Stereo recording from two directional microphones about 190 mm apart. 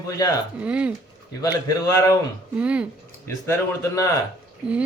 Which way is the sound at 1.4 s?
20° left (ahead or behind).